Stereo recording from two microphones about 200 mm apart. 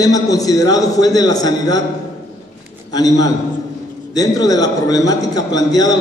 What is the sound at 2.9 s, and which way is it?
A man's voice, 20° left (ahead or behind).